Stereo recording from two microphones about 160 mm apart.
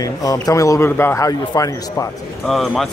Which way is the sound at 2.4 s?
Centre (ahead or behind).